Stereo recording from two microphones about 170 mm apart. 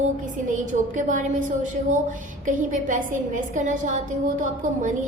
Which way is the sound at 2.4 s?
50° right (ahead or behind).